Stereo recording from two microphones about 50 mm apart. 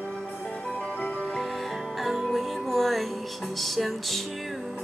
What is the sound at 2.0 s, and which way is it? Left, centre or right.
Music, centre.